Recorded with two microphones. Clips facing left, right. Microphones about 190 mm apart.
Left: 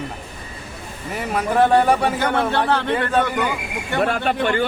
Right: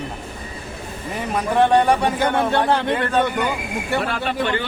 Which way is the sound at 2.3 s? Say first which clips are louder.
Right 1 dB; 15° right (ahead or behind).